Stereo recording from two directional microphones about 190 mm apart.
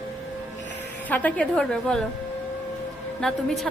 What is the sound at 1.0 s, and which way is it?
A woman's voice, 10° left (ahead or behind).